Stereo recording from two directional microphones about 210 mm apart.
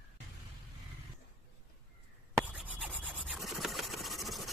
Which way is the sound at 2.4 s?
5° right (ahead or behind).